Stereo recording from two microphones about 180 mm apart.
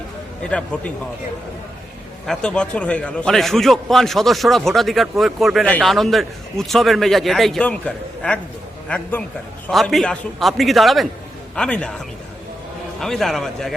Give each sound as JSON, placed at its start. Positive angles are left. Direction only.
{"t": 0.4, "sound": "a man's voice", "side_deg": 5}
{"t": 2.2, "sound": "a man's voice", "side_deg": 5}